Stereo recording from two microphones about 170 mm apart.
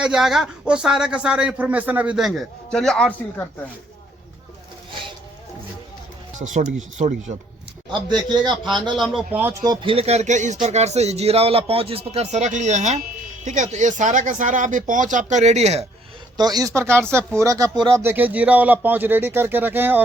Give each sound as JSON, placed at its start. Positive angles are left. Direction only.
{"t": 0.0, "sound": "speech", "side_deg": -5}
{"t": 6.4, "sound": "speech", "side_deg": -45}
{"t": 7.9, "sound": "speech", "side_deg": -25}
{"t": 9.0, "sound": "speech", "side_deg": 0}
{"t": 9.4, "sound": "speech", "side_deg": -20}
{"t": 9.8, "sound": "speech", "side_deg": -35}
{"t": 16.4, "sound": "speech", "side_deg": -20}